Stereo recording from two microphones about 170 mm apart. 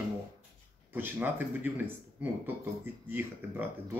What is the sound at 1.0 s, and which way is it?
Speech, 10° right (ahead or behind).